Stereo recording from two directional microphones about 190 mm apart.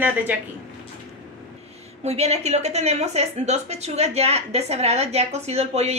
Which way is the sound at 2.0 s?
35° right (ahead or behind).